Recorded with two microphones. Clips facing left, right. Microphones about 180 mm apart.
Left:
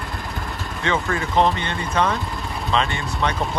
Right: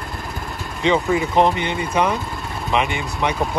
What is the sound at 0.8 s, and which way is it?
Speech, 15° right (ahead or behind).